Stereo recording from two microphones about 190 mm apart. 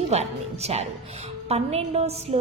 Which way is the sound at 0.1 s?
35° right (ahead or behind).